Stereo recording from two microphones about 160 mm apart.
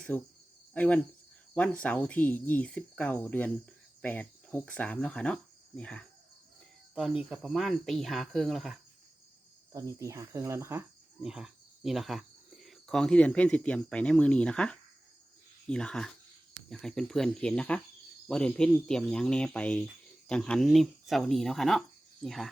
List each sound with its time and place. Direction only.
0.1 s speech: 5° left (ahead or behind)
0.7 s cricket: 10° left (ahead or behind)
1.5 s speech: 10° left (ahead or behind)
4.0 s cricket: 10° left (ahead or behind)
6.9 s speech: 5° right (ahead or behind)
9.7 s speech: 20° right (ahead or behind)
11.2 s speech: 5° right (ahead or behind)